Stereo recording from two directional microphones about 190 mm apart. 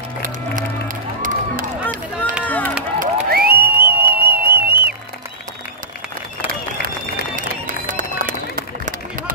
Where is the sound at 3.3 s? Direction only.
55° right (ahead or behind).